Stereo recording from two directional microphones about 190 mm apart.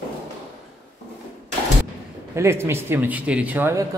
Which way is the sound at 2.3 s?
15° right (ahead or behind).